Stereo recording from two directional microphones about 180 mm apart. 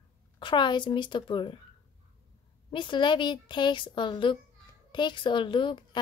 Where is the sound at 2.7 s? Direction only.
25° left (ahead or behind).